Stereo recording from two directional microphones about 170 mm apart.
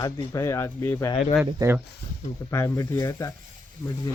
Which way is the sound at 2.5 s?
20° left (ahead or behind).